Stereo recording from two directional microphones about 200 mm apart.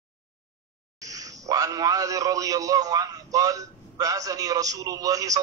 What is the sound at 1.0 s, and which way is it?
A man's voice, 15° right (ahead or behind).